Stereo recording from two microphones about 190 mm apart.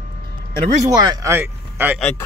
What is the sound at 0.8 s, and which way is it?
Speech, 20° right (ahead or behind).